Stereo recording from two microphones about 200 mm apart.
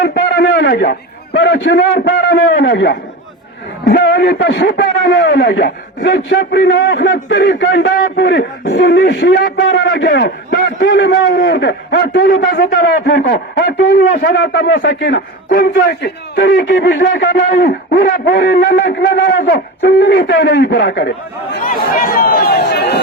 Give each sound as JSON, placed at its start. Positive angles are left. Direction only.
{"t": 0.0, "sound": "a man's voice", "side_deg": 55}
{"t": 21.6, "sound": "speech", "side_deg": 40}